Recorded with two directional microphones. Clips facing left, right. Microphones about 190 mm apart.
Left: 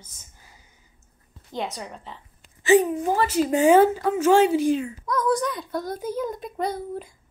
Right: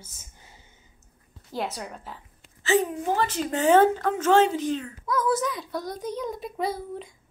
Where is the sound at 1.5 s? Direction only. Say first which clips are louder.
Even; centre (ahead or behind).